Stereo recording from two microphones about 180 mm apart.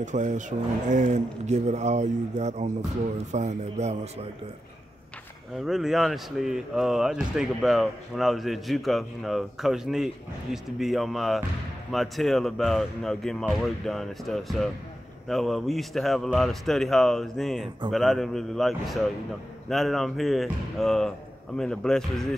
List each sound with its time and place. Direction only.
0.0 s speech: 40° right (ahead or behind)
5.6 s speech: centre (ahead or behind)